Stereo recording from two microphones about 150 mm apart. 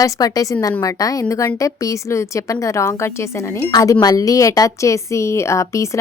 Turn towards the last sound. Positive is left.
turn(degrees=20)  # may be behind; listen again after turning